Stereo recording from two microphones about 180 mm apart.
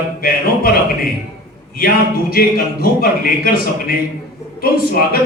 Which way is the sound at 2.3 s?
55° left (ahead or behind).